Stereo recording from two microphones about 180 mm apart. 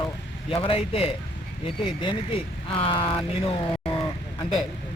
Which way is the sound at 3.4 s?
30° left (ahead or behind).